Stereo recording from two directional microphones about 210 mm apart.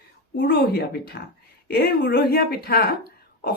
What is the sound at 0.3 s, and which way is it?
A woman's voice, 45° left (ahead or behind).